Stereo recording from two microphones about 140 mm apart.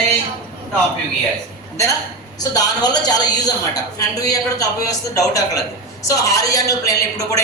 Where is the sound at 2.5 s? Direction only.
25° left (ahead or behind).